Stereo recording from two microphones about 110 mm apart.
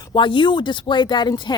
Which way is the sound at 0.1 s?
45° left (ahead or behind).